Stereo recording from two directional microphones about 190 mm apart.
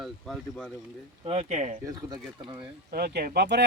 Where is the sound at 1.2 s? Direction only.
30° right (ahead or behind).